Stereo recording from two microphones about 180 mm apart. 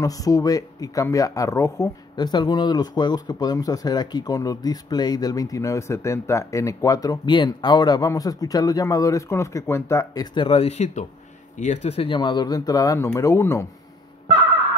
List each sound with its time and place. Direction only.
0.0 s speech: 20° left (ahead or behind)